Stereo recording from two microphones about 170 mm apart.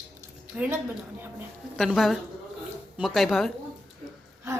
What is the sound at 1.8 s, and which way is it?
Speech, centre (ahead or behind).